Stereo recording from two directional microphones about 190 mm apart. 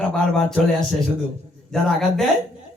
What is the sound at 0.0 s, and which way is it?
Speech, 5° left (ahead or behind).